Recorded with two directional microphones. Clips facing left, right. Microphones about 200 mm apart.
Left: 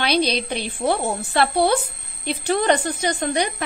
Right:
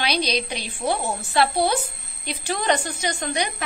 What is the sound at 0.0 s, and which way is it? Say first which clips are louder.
A woman's voice: left 4 dB; 55° left (ahead or behind).